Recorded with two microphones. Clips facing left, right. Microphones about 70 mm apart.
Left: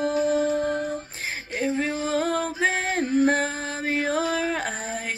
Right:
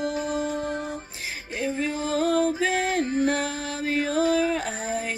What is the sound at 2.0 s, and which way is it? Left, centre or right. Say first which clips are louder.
Music: right 6 dB; left.